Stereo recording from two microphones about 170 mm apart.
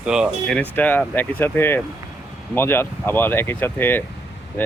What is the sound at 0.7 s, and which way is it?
Speech, 10° left (ahead or behind).